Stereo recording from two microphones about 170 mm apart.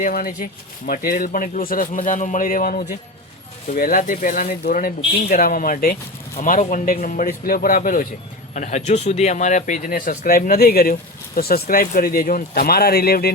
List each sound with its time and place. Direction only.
0.0 s speech: 55° left (ahead or behind)
8.5 s speech: 45° left (ahead or behind); by 13.3 s 65° left (ahead or behind)